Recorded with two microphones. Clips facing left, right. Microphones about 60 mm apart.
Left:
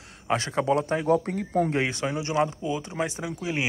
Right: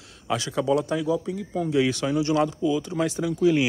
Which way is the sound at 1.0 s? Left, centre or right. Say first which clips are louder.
Left 2 dB; left.